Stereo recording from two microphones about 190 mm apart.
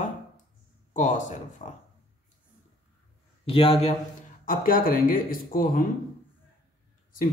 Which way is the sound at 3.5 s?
30° left (ahead or behind).